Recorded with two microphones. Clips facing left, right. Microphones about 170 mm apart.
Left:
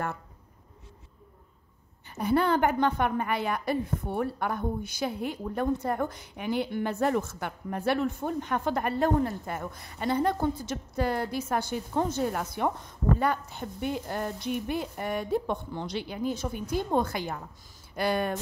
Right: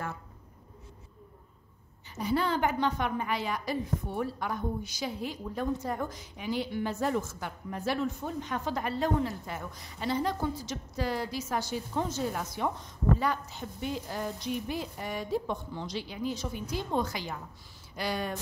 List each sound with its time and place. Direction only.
2.0 s a woman's voice: 55° left (ahead or behind)